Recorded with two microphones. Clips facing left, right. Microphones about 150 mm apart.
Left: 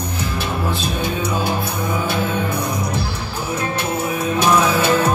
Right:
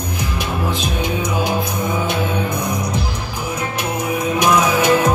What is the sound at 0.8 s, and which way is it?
Music, 15° right (ahead or behind).